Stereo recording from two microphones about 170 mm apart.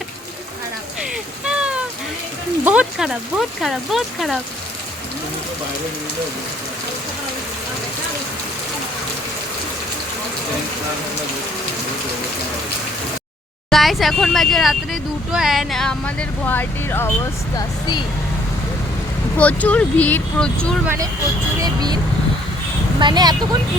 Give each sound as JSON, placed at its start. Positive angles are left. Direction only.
{"t": 1.5, "sound": "a sound", "side_deg": -5}
{"t": 2.6, "sound": "speech", "side_deg": -5}
{"t": 13.7, "sound": "speech", "side_deg": 0}
{"t": 17.6, "sound": "speech", "side_deg": 25}
{"t": 19.4, "sound": "speech", "side_deg": 10}
{"t": 20.8, "sound": "speech", "side_deg": -15}
{"t": 23.0, "sound": "speech", "side_deg": -25}